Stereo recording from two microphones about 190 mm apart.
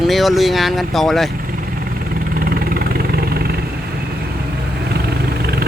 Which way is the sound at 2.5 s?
50° right (ahead or behind).